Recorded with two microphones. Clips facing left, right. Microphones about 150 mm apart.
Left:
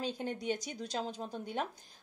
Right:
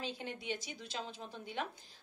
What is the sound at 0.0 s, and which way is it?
A woman's voice, 40° left (ahead or behind).